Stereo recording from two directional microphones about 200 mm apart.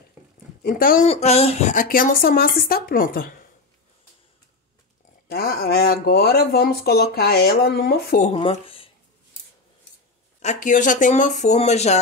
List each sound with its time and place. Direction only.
0.6 s speech: 45° left (ahead or behind)
1.1 s speech: 30° left (ahead or behind); by 3.3 s 45° left (ahead or behind)
5.3 s speech: 50° left (ahead or behind)
8.3 s speech: 30° left (ahead or behind)
10.4 s speech: 40° left (ahead or behind)